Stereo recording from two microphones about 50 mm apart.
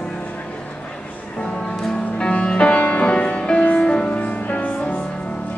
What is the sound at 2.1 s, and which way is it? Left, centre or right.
Music, centre.